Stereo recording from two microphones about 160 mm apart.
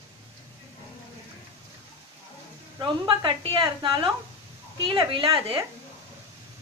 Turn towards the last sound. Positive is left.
turn(degrees=-35)  # may be behind; listen again after turning